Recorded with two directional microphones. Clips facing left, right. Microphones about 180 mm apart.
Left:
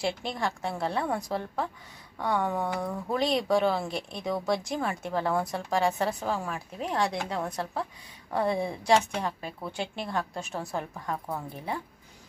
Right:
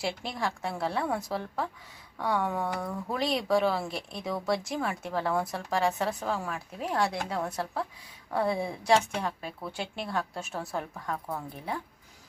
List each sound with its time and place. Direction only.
0.0 s speech: centre (ahead or behind)